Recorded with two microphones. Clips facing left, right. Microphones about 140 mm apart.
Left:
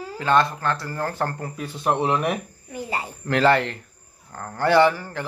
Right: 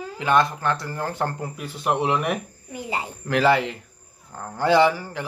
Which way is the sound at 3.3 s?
5° right (ahead or behind).